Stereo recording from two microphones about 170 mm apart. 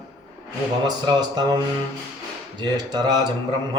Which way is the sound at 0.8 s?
25° right (ahead or behind).